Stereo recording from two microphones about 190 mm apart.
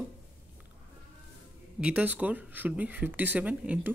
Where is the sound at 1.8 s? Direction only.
10° right (ahead or behind).